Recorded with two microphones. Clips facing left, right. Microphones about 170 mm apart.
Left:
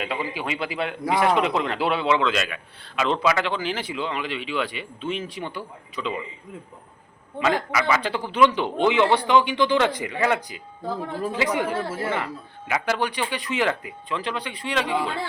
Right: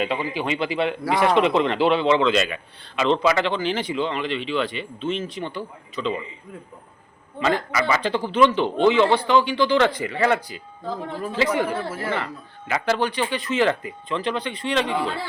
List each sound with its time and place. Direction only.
0.0 s a man's voice: 5° left (ahead or behind)
7.3 s speech: 10° left (ahead or behind)